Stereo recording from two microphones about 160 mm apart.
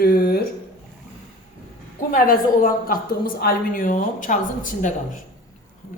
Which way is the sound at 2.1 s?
60° left (ahead or behind).